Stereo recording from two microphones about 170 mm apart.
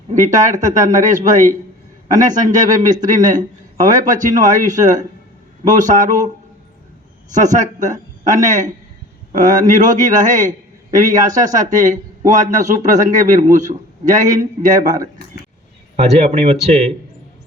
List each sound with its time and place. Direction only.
0.1 s a man's voice: 45° right (ahead or behind)